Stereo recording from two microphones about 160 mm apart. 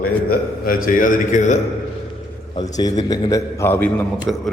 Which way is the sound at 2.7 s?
25° left (ahead or behind).